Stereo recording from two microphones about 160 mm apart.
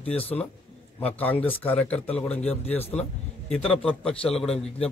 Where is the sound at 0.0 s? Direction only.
40° left (ahead or behind).